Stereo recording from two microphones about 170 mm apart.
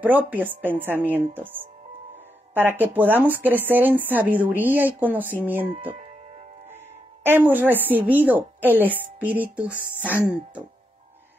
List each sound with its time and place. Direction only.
0.0 s a woman's voice: 10° right (ahead or behind)
2.8 s a woman's voice: 10° right (ahead or behind)
5.9 s music: 40° right (ahead or behind)
7.2 s a woman's voice: 10° right (ahead or behind)